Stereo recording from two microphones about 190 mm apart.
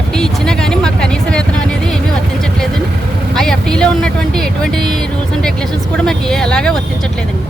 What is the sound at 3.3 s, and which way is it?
Speech, 5° left (ahead or behind).